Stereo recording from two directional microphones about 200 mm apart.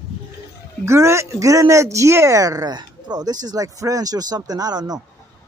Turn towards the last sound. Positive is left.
turn(degrees=-20)  # may be behind; listen again after turning